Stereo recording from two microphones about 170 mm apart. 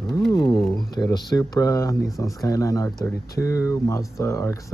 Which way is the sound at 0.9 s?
25° left (ahead or behind).